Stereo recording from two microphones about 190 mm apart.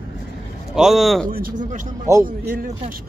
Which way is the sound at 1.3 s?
50° right (ahead or behind).